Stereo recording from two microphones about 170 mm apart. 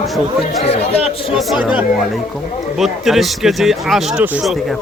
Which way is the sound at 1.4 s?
5° right (ahead or behind).